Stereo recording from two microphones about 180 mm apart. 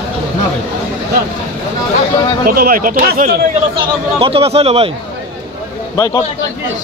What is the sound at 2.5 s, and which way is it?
Speech, 55° right (ahead or behind).